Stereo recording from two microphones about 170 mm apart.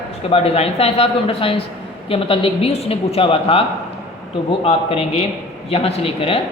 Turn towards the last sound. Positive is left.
turn(degrees=35)  # may be behind; listen again after turning